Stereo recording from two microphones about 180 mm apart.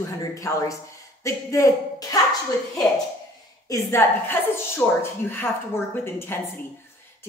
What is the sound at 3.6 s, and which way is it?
Speech, 15° left (ahead or behind).